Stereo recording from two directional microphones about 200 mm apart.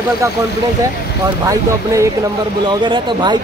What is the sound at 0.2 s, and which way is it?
Speech, 15° right (ahead or behind).